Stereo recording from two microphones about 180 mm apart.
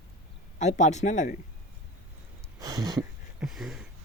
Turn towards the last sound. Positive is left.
turn(degrees=0)  # may be behind; listen again after turning